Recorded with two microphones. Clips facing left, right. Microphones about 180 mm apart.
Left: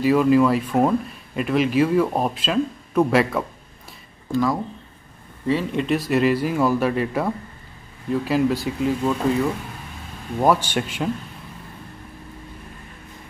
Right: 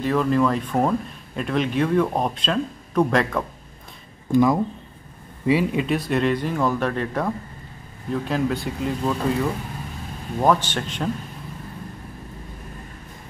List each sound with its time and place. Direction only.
0.0 s speech: 10° left (ahead or behind)
4.3 s speech: 20° right (ahead or behind); by 9.4 s centre (ahead or behind)
10.4 s speech: 10° left (ahead or behind)